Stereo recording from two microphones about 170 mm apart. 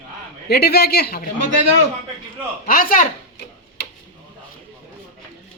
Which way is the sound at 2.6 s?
55° left (ahead or behind).